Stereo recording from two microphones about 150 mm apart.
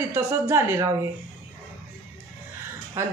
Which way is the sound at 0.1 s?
15° right (ahead or behind).